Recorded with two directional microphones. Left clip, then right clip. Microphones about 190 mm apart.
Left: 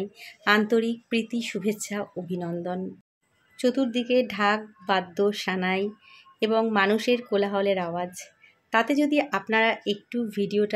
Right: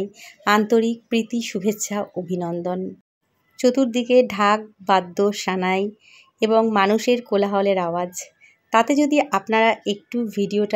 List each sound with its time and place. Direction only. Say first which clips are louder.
0.0 s speech: right 4 dB; 25° right (ahead or behind)